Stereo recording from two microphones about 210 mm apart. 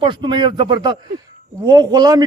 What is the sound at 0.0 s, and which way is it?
A man's voice, 20° right (ahead or behind).